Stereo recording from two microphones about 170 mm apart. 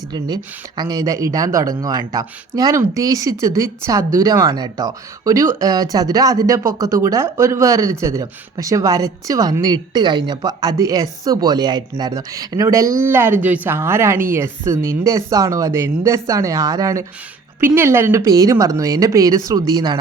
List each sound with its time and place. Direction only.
0.8 s speech: 20° right (ahead or behind)